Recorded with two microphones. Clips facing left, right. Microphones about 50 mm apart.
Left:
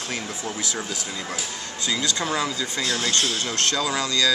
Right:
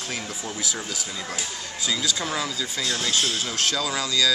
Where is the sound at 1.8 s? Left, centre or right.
Centre.